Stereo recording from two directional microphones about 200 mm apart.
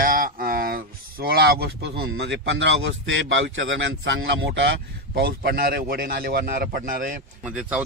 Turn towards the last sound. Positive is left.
turn(degrees=-5)  # may be behind; listen again after turning